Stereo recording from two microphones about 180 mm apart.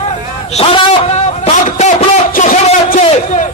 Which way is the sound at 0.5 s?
35° left (ahead or behind).